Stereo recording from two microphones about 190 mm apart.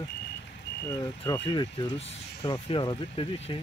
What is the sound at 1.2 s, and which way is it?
Speech, 20° left (ahead or behind).